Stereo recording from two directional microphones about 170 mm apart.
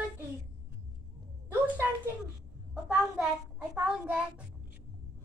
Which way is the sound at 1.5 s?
10° right (ahead or behind).